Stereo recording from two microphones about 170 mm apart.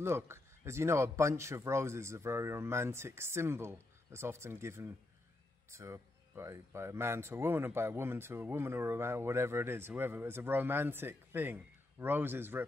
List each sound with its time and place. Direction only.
0.0 s speech: 15° right (ahead or behind)